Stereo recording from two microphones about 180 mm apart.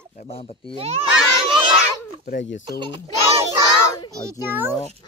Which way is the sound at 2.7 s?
25° right (ahead or behind).